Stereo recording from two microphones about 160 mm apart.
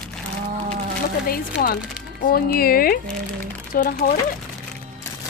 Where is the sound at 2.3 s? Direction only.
65° left (ahead or behind).